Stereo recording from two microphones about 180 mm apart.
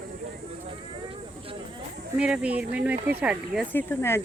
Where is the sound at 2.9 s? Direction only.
55° right (ahead or behind).